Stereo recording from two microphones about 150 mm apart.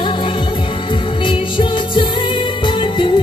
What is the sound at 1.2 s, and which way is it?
Music, 35° left (ahead or behind).